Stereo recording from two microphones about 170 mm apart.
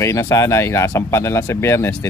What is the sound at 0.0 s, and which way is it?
Speech, 20° left (ahead or behind).